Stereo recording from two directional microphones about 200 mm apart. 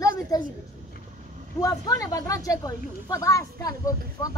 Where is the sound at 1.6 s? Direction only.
15° left (ahead or behind).